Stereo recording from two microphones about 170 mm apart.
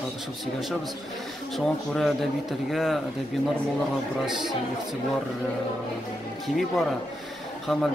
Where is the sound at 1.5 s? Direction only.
Centre (ahead or behind).